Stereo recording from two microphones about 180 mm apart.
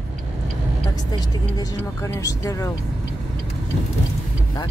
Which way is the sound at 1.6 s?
20° left (ahead or behind).